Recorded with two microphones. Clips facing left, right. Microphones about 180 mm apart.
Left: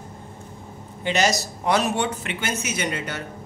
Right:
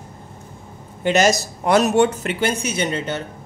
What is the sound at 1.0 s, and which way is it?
A man's voice, 50° right (ahead or behind).